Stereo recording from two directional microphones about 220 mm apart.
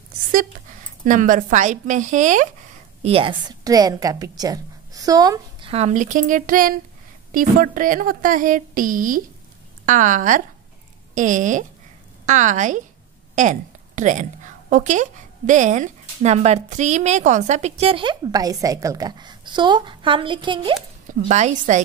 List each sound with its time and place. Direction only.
1.0 s a woman's voice: 35° right (ahead or behind); by 20.7 s 20° right (ahead or behind)
21.1 s a woman's voice: 30° right (ahead or behind)